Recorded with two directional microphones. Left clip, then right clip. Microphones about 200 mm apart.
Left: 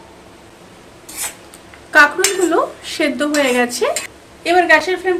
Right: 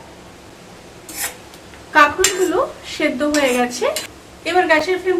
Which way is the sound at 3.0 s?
55° left (ahead or behind).